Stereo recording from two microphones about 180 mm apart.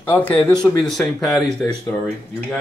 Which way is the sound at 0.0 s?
10° left (ahead or behind).